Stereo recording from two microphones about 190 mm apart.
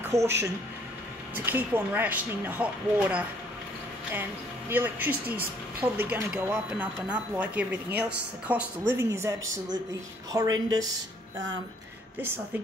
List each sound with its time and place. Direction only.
0.0 s speech: 15° right (ahead or behind)
10.3 s a woman's voice: 20° right (ahead or behind)